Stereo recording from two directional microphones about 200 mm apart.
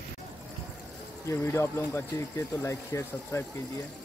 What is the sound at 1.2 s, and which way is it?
Speech, 15° left (ahead or behind).